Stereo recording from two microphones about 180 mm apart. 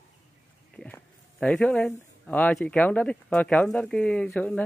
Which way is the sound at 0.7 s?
5° left (ahead or behind).